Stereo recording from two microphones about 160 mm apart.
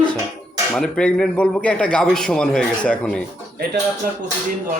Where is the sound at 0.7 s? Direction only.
5° left (ahead or behind).